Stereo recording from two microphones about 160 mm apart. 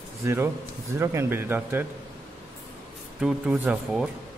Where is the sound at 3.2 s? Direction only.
5° right (ahead or behind).